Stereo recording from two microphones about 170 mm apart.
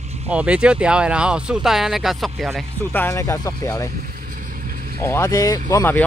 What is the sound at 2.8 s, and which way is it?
Speech, 15° left (ahead or behind).